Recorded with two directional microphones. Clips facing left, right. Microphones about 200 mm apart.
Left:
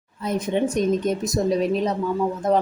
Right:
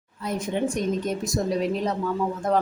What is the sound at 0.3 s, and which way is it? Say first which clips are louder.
Speech: left 3 dB; 20° left (ahead or behind).